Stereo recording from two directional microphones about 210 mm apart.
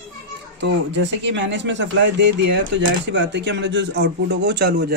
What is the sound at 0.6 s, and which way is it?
Speech, 60° right (ahead or behind).